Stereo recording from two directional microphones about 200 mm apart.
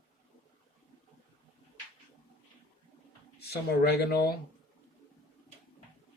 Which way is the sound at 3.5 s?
50° left (ahead or behind).